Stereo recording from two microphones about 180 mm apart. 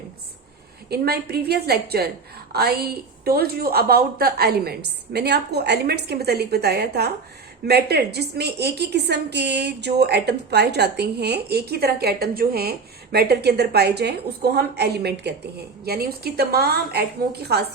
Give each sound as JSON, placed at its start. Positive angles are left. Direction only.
{"t": 0.9, "sound": "a woman's voice", "side_deg": -60}